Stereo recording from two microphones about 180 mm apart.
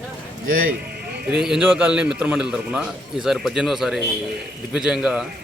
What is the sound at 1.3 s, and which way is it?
A man's voice, 5° right (ahead or behind).